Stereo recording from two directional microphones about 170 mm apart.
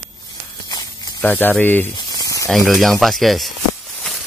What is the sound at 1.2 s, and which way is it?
Speech, 10° left (ahead or behind).